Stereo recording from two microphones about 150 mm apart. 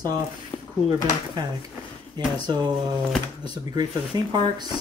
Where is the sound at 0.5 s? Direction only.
30° left (ahead or behind).